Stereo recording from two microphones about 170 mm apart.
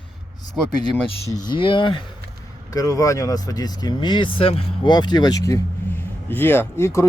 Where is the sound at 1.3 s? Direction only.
25° left (ahead or behind).